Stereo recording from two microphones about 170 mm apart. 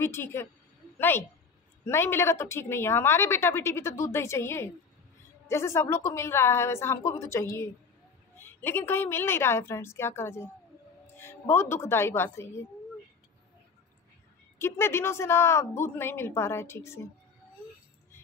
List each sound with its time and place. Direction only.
0.0 s a woman's voice: 15° left (ahead or behind)
14.6 s a woman's voice: 15° left (ahead or behind)